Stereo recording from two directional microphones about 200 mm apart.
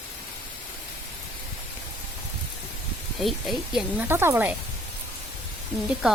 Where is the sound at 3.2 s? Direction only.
Centre (ahead or behind).